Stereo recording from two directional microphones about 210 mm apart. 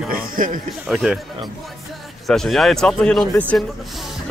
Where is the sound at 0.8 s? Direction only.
Centre (ahead or behind).